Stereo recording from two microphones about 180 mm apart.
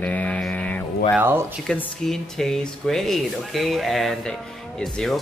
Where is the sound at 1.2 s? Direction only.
10° right (ahead or behind).